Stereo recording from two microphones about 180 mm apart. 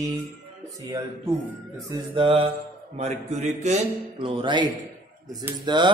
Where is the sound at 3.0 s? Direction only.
40° right (ahead or behind).